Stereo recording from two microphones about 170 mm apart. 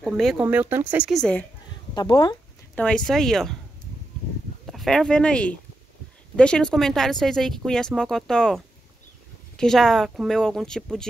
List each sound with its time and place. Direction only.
0.4 s speech: 10° right (ahead or behind)
2.0 s speech: 25° left (ahead or behind)
2.7 s speech: 5° left (ahead or behind)
4.6 s speech: centre (ahead or behind)